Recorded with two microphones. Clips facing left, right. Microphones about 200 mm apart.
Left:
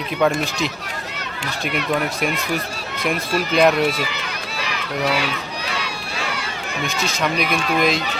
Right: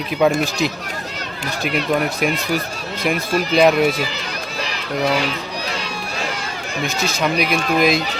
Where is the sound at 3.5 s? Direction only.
5° right (ahead or behind).